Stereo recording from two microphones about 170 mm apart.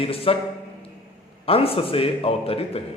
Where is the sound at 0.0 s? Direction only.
35° left (ahead or behind).